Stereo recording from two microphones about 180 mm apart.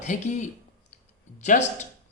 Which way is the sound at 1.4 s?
40° left (ahead or behind).